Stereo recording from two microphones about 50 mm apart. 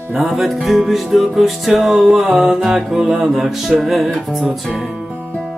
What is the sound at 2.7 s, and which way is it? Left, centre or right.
Mantra, centre.